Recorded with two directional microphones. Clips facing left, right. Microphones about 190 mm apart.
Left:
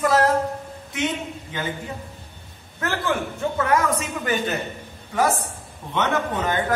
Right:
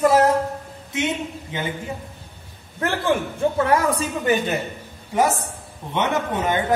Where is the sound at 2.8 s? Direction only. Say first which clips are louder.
Right 3 dB; 30° right (ahead or behind).